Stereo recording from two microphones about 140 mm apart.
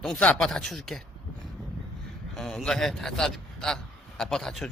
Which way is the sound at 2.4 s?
5° left (ahead or behind).